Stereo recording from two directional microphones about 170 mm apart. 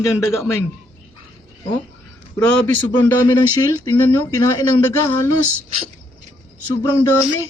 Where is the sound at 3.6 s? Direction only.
25° left (ahead or behind).